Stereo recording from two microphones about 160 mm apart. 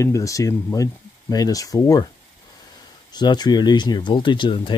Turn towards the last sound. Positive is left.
turn(degrees=30)  # may be behind; listen again after turning